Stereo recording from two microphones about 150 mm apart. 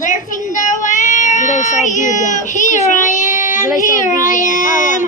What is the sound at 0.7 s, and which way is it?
Child singing, 55° left (ahead or behind).